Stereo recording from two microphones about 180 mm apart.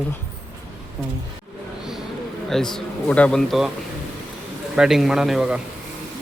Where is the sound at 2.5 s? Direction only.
Centre (ahead or behind).